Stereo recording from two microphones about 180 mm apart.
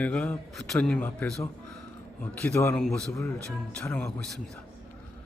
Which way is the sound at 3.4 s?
5° left (ahead or behind).